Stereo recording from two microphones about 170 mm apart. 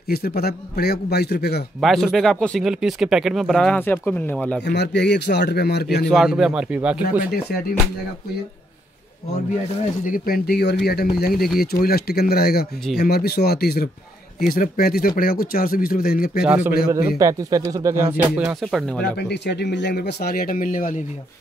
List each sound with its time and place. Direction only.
0.1 s speech: 65° left (ahead or behind)
1.8 s speech: centre (ahead or behind)
4.6 s a man's voice: 90° left; by 5.9 s 70° left (ahead or behind)
6.0 s speech: centre (ahead or behind)
10.0 s speech: 55° left (ahead or behind)
16.4 s a man's voice: 10° right (ahead or behind)
17.2 s speech: 20° right (ahead or behind)
18.4 s speech: centre (ahead or behind)
19.1 s speech: 80° left; by 21.0 s 50° left (ahead or behind)